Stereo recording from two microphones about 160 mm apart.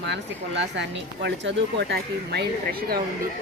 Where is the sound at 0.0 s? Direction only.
90° right.